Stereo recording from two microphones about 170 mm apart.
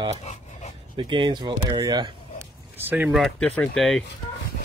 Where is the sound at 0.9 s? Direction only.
30° right (ahead or behind).